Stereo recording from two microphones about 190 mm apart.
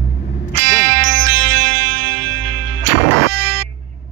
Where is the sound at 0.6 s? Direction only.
70° right (ahead or behind).